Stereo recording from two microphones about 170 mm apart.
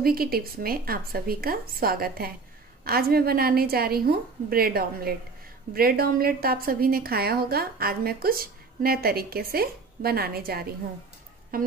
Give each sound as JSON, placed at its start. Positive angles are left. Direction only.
{"t": 0.0, "sound": "a woman's voice", "side_deg": -60}